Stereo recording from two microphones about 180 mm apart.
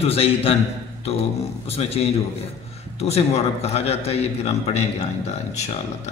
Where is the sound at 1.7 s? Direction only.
35° left (ahead or behind).